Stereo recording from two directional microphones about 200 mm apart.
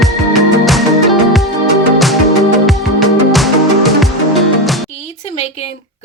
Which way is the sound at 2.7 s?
Centre (ahead or behind).